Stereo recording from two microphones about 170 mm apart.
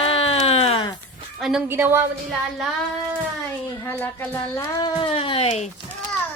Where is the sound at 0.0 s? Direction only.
35° left (ahead or behind).